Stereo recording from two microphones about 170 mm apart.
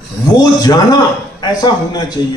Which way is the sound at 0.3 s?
25° left (ahead or behind).